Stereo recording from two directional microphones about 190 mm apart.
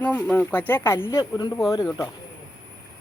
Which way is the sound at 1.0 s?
25° left (ahead or behind).